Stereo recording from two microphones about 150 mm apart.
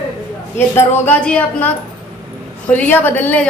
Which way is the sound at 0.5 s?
15° left (ahead or behind).